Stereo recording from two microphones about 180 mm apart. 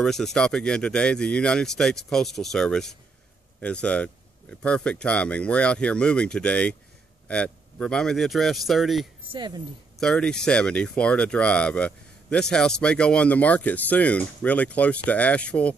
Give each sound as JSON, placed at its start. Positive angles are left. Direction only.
{"t": 0.0, "sound": "speech", "side_deg": 5}
{"t": 9.2, "sound": "speech", "side_deg": -25}
{"t": 9.9, "sound": "speech", "side_deg": 5}